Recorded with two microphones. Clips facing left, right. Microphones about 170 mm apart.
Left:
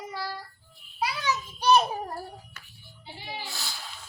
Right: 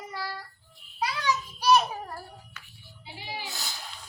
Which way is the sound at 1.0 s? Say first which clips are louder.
Even; 20° left (ahead or behind).